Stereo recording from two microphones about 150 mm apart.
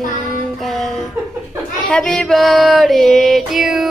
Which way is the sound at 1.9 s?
5° left (ahead or behind).